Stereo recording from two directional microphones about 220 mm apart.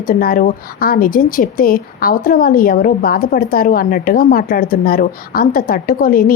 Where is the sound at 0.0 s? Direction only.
40° left (ahead or behind).